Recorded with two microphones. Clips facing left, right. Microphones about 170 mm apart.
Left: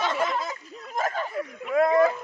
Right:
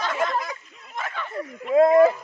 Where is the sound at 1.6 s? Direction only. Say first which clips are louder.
Right 5 dB; 25° right (ahead or behind).